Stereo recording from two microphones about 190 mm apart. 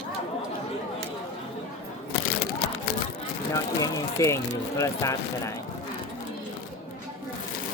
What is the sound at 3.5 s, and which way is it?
Speech, 15° left (ahead or behind).